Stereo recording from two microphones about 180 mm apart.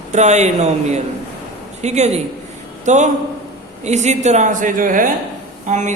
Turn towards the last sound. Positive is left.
turn(degrees=-40)  # may be behind; listen again after turning